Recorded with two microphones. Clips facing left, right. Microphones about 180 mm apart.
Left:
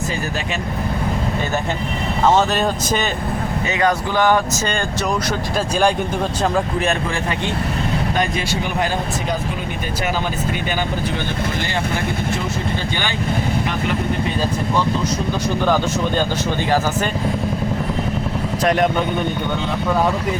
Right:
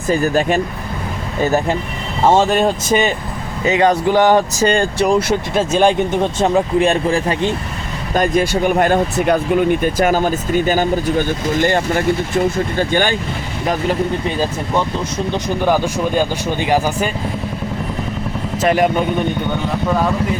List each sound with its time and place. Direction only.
0.1 s speech: 45° right (ahead or behind)
2.2 s speech: 30° right (ahead or behind)
8.1 s speech: 45° right (ahead or behind)
15.6 s speech: 10° right (ahead or behind)
18.6 s speech: 5° right (ahead or behind)